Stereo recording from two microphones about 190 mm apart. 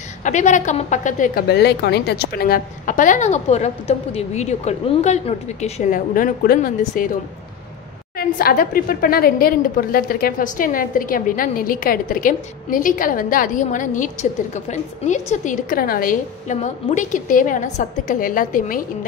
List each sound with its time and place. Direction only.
0.2 s a woman's voice: 40° left (ahead or behind)
8.2 s a woman's voice: 50° left (ahead or behind)